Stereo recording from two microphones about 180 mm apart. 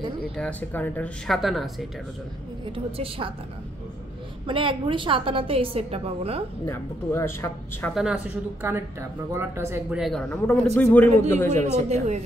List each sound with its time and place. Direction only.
0.4 s speech: 10° left (ahead or behind)
2.7 s a woman's voice: 30° right (ahead or behind)
4.5 s a woman's voice: 30° right (ahead or behind)
6.6 s speech: 15° left (ahead or behind)
7.9 s speech: 5° right (ahead or behind)
9.9 s speech: centre (ahead or behind)